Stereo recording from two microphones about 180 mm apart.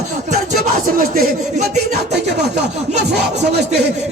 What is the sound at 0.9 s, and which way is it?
Speech, 50° right (ahead or behind).